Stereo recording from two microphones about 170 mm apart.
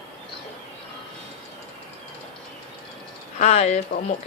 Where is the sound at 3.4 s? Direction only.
40° left (ahead or behind).